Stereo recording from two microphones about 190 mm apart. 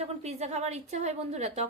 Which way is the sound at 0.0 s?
35° right (ahead or behind).